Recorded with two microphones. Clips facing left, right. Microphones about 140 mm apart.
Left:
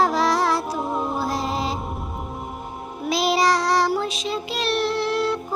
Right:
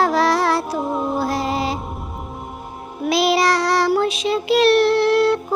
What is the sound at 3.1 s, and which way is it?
Child singing, 70° right (ahead or behind).